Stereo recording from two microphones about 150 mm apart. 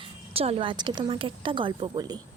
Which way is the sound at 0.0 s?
40° right (ahead or behind).